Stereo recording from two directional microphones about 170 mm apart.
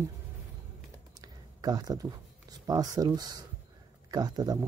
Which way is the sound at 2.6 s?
20° right (ahead or behind).